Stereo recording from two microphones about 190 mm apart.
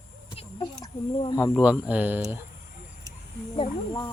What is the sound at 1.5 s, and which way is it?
Speech, 5° right (ahead or behind).